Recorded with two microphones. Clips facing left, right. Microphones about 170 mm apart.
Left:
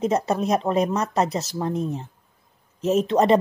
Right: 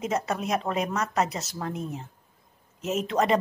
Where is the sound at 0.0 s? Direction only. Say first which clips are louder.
Left 6 dB; 30° left (ahead or behind).